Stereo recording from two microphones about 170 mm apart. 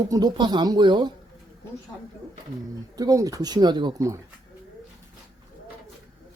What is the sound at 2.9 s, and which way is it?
Speech, 20° right (ahead or behind).